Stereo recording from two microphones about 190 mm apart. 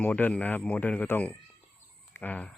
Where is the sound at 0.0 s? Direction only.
10° left (ahead or behind).